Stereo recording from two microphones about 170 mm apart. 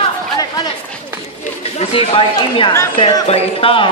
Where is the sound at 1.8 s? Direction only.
35° left (ahead or behind).